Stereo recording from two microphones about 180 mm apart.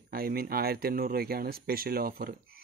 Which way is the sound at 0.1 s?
55° right (ahead or behind).